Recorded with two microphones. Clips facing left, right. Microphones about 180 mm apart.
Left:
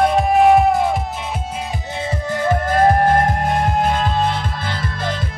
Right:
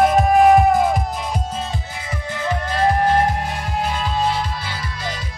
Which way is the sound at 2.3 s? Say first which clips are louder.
Left 5 dB; 50° left (ahead or behind).